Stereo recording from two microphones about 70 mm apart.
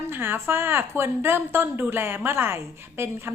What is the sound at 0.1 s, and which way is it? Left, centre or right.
A woman's voice, right.